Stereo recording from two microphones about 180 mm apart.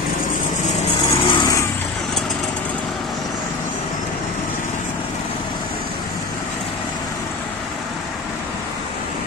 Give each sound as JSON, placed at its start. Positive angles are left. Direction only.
{"t": 1.2, "sound": "vehicle", "side_deg": 25}